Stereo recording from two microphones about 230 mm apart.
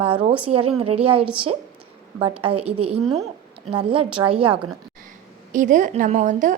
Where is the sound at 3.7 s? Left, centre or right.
Right.